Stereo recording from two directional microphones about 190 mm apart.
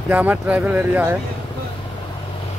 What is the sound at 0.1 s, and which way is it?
Speech, 10° right (ahead or behind).